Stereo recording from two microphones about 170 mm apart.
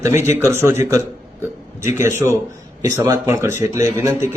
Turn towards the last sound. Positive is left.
turn(degrees=-15)  # may be behind; listen again after turning